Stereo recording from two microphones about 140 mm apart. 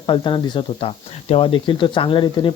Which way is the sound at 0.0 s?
35° left (ahead or behind).